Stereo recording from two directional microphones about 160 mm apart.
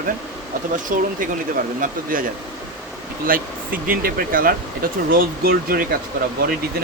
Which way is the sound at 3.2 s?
60° right (ahead or behind).